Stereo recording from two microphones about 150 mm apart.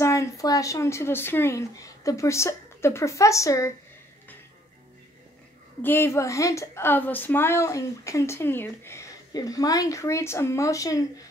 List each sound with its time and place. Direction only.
0.0 s a woman's voice: 20° left (ahead or behind)
5.8 s a woman's voice: 15° left (ahead or behind)